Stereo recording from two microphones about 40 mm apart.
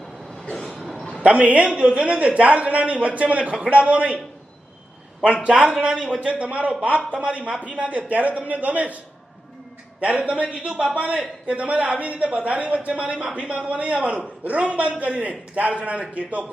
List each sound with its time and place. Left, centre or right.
0.5 s train: centre
1.2 s speech: right
5.2 s a man's voice: right
10.0 s a man's voice: right